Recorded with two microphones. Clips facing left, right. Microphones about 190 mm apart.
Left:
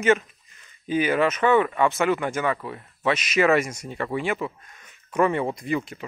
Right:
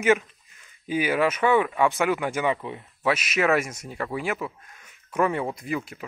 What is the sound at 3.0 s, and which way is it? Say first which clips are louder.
Speech: left 2 dB; 5° right (ahead or behind).